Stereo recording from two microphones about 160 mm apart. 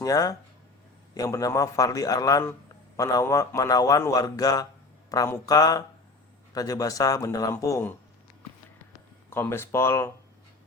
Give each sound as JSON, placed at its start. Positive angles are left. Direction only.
{"t": 0.0, "sound": "a man's voice", "side_deg": 20}
{"t": 9.3, "sound": "speech", "side_deg": 15}